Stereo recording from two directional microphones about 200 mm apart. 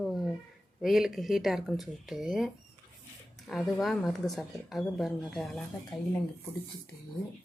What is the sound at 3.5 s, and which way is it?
Speech, centre (ahead or behind).